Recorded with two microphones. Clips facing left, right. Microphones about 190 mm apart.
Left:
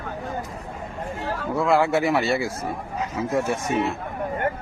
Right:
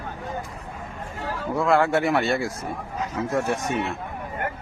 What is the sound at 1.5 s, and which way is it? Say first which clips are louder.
A man's voice: even; centre (ahead or behind).